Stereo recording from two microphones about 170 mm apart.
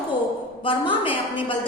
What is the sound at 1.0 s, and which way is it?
Speech, 30° left (ahead or behind).